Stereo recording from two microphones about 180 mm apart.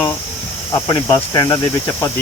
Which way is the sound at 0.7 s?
20° left (ahead or behind).